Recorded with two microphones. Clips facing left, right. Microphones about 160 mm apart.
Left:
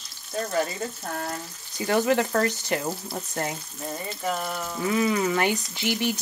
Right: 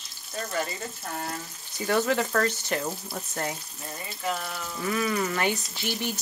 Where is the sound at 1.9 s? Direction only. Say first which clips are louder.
Left 3 dB; 15° left (ahead or behind).